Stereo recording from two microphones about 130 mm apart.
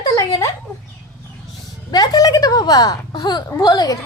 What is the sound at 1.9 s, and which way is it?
Speech, 30° left (ahead or behind).